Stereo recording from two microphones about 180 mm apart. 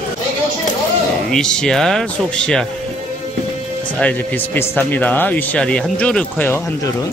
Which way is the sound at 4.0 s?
10° left (ahead or behind).